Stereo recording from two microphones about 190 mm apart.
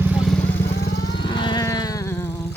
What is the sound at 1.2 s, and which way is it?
Vehicle, 25° left (ahead or behind).